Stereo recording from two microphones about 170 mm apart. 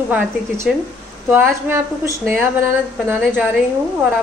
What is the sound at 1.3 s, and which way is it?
A woman's voice, 15° right (ahead or behind).